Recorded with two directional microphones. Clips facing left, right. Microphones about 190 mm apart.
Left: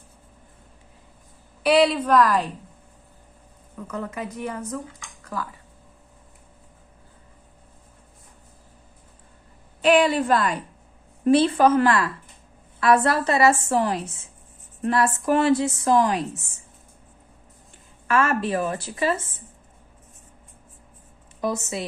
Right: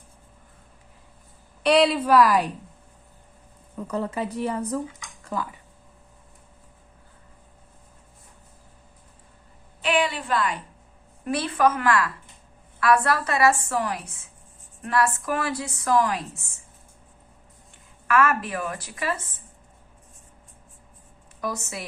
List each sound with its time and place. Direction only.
1.6 s a woman's voice: centre (ahead or behind)
3.9 s a woman's voice: 30° right (ahead or behind)
4.9 s a sound: 20° right (ahead or behind)
9.8 s a woman's voice: 40° left (ahead or behind)
11.3 s a woman's voice: 25° left (ahead or behind)
18.1 s a woman's voice: 25° left (ahead or behind)
21.4 s a woman's voice: 20° left (ahead or behind)